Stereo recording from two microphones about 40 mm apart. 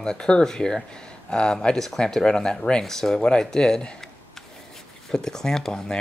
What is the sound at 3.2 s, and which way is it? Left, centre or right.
Speech, left.